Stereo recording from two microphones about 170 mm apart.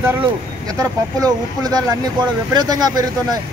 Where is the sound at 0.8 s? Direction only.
20° right (ahead or behind).